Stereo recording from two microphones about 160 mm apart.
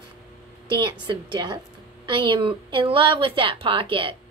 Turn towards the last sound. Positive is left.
turn(degrees=-35)  # may be behind; listen again after turning